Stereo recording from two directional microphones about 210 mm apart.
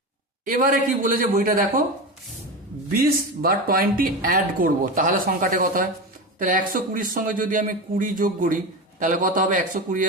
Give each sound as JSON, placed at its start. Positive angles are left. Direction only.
{"t": 0.4, "sound": "a man's voice", "side_deg": -40}
{"t": 2.9, "sound": "a man's voice", "side_deg": -45}